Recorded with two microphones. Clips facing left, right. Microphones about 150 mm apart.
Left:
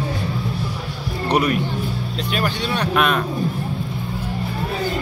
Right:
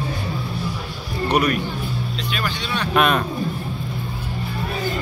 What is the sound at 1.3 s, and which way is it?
Speech, 25° left (ahead or behind).